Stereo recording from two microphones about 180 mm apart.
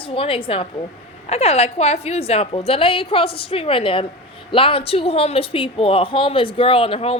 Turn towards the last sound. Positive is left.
turn(degrees=35)  # may be behind; listen again after turning